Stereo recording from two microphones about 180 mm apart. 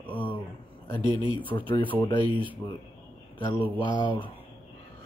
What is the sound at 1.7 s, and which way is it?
Speech, 25° left (ahead or behind).